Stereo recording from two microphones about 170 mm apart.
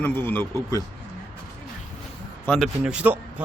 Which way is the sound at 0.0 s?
10° left (ahead or behind).